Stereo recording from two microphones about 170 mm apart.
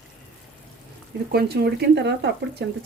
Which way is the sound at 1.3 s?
70° right (ahead or behind).